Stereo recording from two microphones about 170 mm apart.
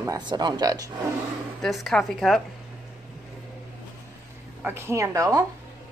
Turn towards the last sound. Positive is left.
turn(degrees=-20)  # may be behind; listen again after turning